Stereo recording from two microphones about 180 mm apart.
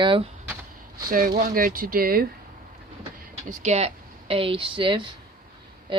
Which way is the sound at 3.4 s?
40° right (ahead or behind).